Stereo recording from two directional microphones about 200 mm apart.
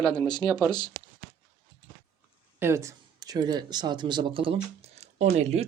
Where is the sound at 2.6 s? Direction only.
15° right (ahead or behind); by 5.6 s 35° right (ahead or behind).